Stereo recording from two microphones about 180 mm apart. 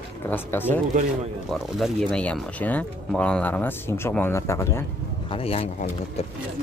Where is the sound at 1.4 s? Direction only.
Centre (ahead or behind); by 4.8 s 15° left (ahead or behind).